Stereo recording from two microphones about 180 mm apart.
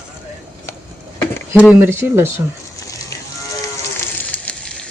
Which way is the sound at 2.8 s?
20° left (ahead or behind).